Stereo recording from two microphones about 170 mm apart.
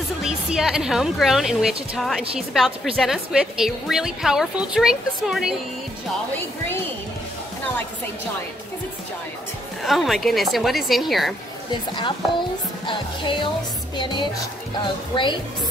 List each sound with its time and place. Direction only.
0.2 s a woman's voice: 5° right (ahead or behind)
9.8 s a woman's voice: centre (ahead or behind)
11.9 s speech: 30° left (ahead or behind)